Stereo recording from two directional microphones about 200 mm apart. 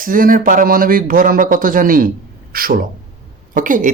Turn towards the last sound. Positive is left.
turn(degrees=-40)  # may be behind; listen again after turning